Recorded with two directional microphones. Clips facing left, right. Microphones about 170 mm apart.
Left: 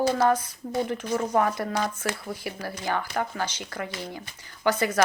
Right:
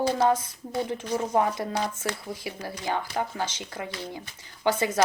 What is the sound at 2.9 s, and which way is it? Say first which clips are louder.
Speech: left 1 dB; 20° right (ahead or behind).